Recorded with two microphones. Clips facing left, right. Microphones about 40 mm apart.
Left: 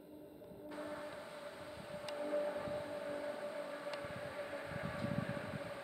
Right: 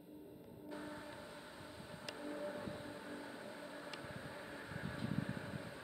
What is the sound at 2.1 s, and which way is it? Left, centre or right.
Vehicle, centre.